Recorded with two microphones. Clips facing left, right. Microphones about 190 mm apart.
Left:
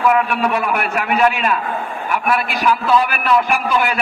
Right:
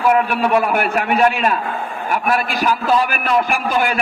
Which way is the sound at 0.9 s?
35° right (ahead or behind).